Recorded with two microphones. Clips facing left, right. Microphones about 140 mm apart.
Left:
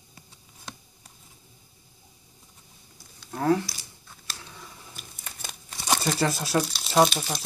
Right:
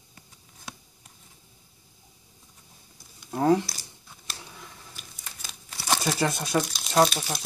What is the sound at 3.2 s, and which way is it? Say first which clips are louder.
Speech: right 2 dB; 15° right (ahead or behind).